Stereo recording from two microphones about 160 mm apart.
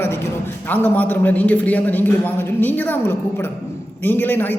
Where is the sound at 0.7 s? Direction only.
10° left (ahead or behind).